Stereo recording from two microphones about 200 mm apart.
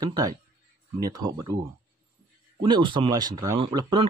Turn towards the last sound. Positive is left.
turn(degrees=-20)  # may be behind; listen again after turning